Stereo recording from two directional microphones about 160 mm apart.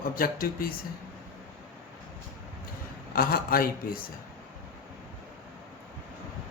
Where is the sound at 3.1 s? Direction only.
65° left (ahead or behind).